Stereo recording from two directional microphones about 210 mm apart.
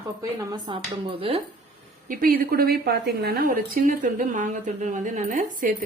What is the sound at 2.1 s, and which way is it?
A woman's voice, 45° right (ahead or behind).